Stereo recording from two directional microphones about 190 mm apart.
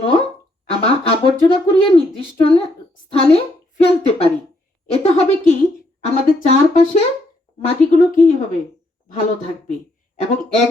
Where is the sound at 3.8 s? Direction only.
30° left (ahead or behind).